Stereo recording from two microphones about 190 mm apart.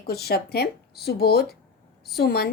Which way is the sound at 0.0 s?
55° left (ahead or behind).